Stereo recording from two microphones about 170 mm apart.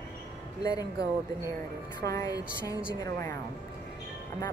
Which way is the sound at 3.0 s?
15° left (ahead or behind).